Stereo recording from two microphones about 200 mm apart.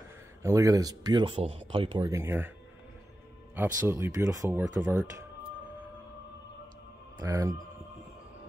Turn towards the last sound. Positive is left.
turn(degrees=-15)  # may be behind; listen again after turning